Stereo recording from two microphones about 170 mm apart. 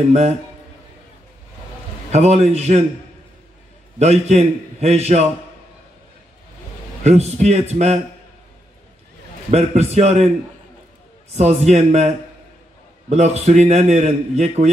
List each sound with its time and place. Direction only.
0.1 s a man's voice: 40° right (ahead or behind)
2.1 s a man's voice: 40° right (ahead or behind)
4.0 s a man's voice: 40° right (ahead or behind)
7.0 s a man's voice: 40° right (ahead or behind)
9.5 s a man's voice: 40° right (ahead or behind)
11.3 s a man's voice: 40° right (ahead or behind)
13.1 s a man's voice: 40° right (ahead or behind)